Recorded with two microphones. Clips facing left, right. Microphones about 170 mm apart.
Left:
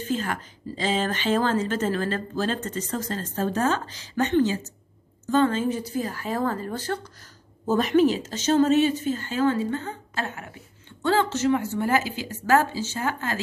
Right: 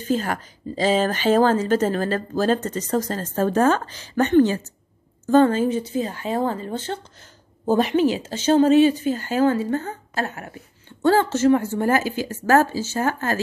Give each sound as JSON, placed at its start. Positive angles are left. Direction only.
{"t": 0.1, "sound": "a woman's voice", "side_deg": -40}
{"t": 5.2, "sound": "a woman's voice", "side_deg": -45}
{"t": 5.7, "sound": "a woman's voice", "side_deg": -25}